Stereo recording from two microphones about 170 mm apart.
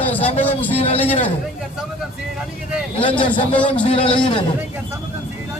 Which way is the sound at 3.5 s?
10° left (ahead or behind).